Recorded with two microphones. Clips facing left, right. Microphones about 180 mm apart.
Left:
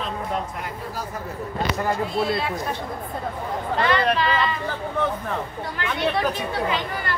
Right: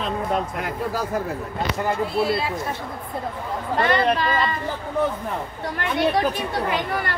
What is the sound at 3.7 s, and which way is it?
Speech, 45° right (ahead or behind).